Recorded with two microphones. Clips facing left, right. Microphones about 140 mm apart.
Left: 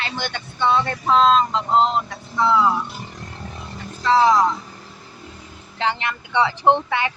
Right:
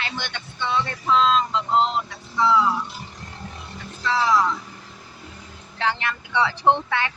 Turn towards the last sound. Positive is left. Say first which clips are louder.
# left 2 dB
turn(degrees=15)  # may be behind; listen again after turning